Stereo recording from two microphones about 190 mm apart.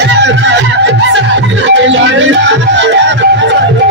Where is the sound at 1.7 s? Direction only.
75° right (ahead or behind).